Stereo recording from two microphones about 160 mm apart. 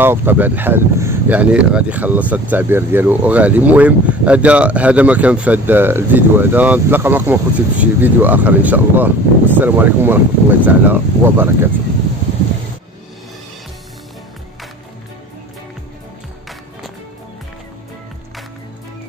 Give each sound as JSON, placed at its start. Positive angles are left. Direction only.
{"t": 0.0, "sound": "speech", "side_deg": -15}